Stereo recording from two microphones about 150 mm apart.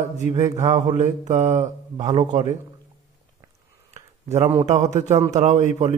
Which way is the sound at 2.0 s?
25° right (ahead or behind).